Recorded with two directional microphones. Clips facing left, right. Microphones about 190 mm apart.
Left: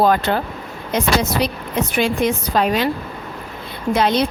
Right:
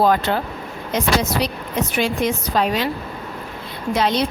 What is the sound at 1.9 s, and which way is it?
Speech, 55° left (ahead or behind).